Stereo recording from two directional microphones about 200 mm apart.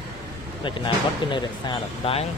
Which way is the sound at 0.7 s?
25° left (ahead or behind).